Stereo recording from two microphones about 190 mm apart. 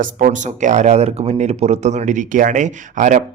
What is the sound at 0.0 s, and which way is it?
A man's voice, 45° right (ahead or behind).